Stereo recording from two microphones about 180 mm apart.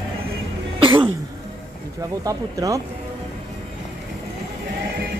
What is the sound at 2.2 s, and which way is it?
Speech, 20° right (ahead or behind).